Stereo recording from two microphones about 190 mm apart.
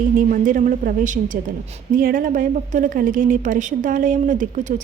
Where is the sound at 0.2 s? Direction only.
45° right (ahead or behind).